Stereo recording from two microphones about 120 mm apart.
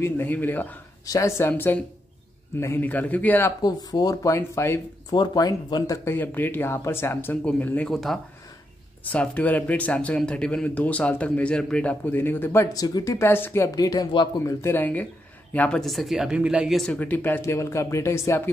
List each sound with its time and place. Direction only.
0.0 s speech: 15° left (ahead or behind)
1.0 s speech: 25° left (ahead or behind)
1.5 s speech: 10° left (ahead or behind)
3.6 s speech: 35° left (ahead or behind)
5.1 s speech: 35° left (ahead or behind)
6.0 s speech: 15° left (ahead or behind)
7.9 s speech: centre (ahead or behind); by 12.6 s 15° left (ahead or behind)
12.7 s speech: 30° left (ahead or behind)
13.7 s speech: 30° left (ahead or behind)
14.4 s speech: 25° left (ahead or behind); by 16.8 s 5° right (ahead or behind)
16.8 s speech: 10° left (ahead or behind)